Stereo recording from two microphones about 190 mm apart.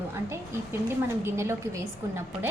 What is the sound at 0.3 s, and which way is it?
A woman's voice, 15° right (ahead or behind).